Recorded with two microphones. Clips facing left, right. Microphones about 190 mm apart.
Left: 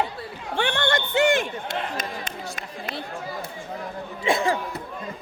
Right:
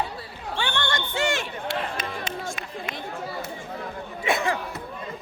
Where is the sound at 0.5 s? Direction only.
60° left (ahead or behind).